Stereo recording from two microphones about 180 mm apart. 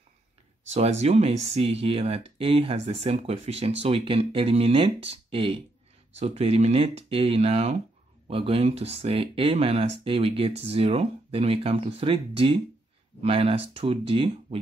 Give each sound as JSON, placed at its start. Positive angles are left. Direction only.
{"t": 0.7, "sound": "speech", "side_deg": -35}